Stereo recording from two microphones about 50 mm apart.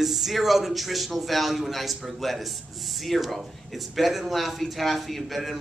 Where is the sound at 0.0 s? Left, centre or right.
Centre.